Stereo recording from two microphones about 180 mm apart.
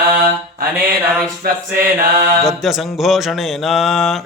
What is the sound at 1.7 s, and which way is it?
Mantra, 15° right (ahead or behind).